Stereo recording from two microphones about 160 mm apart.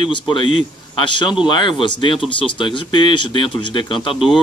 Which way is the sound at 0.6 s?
30° left (ahead or behind).